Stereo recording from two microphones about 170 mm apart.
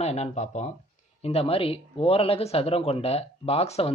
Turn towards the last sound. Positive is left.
turn(degrees=35)  # may be behind; listen again after turning